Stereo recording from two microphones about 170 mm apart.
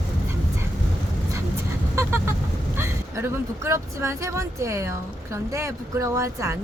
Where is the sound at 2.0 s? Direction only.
15° right (ahead or behind).